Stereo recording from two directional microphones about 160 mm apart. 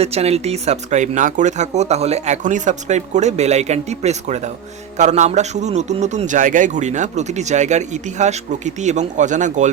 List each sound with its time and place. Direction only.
0.0 s a man's voice: 40° right (ahead or behind)